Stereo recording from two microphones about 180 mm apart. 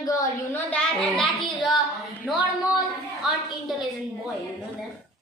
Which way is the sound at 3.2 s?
Centre (ahead or behind).